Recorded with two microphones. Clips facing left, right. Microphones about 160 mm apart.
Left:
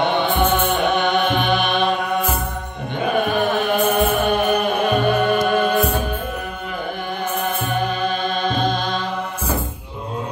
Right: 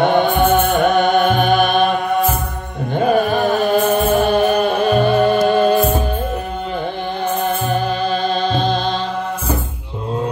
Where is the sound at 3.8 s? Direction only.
30° right (ahead or behind).